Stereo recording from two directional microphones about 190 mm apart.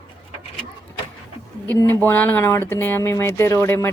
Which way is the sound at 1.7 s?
10° left (ahead or behind).